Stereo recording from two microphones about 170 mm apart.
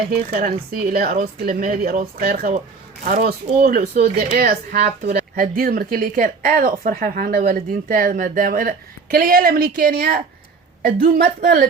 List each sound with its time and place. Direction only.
0.3 s speech: 60° right (ahead or behind)